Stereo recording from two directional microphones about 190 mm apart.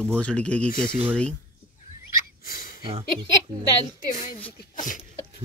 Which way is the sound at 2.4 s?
45° left (ahead or behind).